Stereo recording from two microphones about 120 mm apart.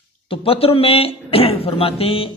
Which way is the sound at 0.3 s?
50° left (ahead or behind).